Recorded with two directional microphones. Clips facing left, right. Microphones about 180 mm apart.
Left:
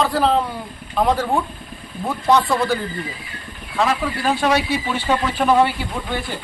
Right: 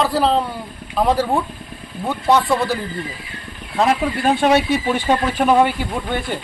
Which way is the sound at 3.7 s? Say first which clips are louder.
Right 3 dB; 45° right (ahead or behind).